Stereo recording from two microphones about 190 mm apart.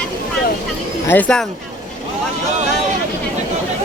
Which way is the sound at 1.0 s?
10° left (ahead or behind).